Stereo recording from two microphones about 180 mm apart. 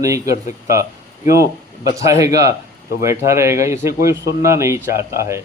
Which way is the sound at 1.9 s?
15° right (ahead or behind).